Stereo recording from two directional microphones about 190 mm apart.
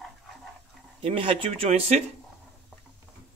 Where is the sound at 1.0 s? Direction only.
30° right (ahead or behind).